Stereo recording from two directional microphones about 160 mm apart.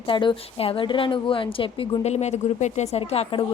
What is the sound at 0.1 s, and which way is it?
A woman's voice, 30° left (ahead or behind).